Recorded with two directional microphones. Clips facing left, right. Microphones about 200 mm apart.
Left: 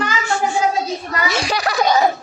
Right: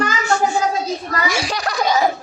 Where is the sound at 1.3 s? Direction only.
5° right (ahead or behind).